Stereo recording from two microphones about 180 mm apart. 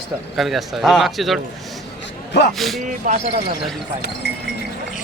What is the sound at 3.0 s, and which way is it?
Speech, 40° right (ahead or behind).